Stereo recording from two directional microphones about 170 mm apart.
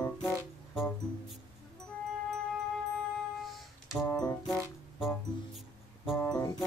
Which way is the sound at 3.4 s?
Centre (ahead or behind).